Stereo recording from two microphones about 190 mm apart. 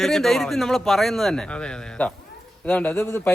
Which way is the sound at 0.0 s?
Centre (ahead or behind).